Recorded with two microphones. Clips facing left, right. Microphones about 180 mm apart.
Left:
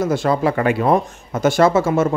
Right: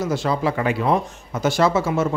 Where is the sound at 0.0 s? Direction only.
50° left (ahead or behind).